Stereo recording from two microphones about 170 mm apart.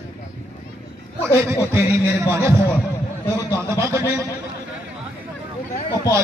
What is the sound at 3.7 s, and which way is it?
Speech, 15° right (ahead or behind).